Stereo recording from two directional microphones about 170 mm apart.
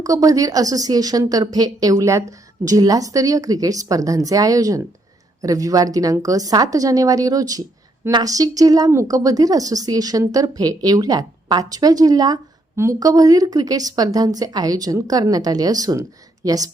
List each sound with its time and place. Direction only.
0.0 s a woman's voice: 20° right (ahead or behind)